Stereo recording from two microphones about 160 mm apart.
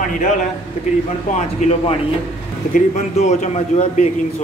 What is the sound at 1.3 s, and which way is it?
A man's voice, 45° left (ahead or behind).